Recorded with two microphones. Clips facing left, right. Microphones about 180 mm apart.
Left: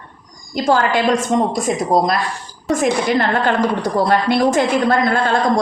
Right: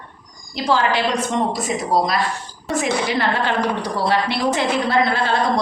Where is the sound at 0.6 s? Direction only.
50° left (ahead or behind).